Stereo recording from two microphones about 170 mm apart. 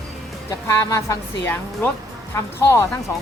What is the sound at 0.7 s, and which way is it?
Speech, 15° left (ahead or behind).